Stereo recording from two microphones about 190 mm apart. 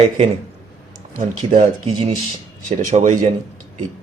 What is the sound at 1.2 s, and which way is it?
Speech, 45° right (ahead or behind).